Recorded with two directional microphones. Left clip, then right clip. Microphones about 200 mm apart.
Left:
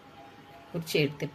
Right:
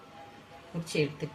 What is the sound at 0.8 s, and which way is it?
Speech, 40° left (ahead or behind).